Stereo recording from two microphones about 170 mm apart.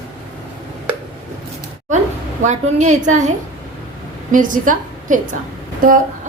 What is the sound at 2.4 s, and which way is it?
Speech, 45° right (ahead or behind).